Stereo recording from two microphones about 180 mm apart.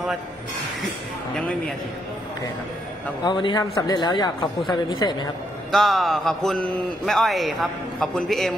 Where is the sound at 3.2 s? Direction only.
25° left (ahead or behind).